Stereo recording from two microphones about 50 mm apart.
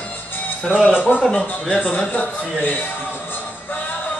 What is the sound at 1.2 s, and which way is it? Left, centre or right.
Speech, centre.